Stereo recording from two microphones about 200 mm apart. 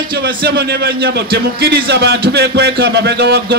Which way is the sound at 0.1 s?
50° right (ahead or behind).